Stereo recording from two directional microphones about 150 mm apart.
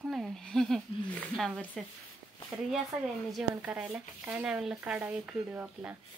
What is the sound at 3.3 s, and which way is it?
Speech, 5° right (ahead or behind).